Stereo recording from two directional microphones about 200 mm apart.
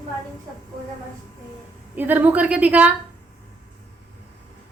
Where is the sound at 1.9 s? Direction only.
10° right (ahead or behind).